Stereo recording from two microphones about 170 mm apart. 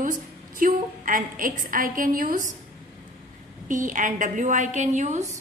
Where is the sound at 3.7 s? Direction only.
50° right (ahead or behind).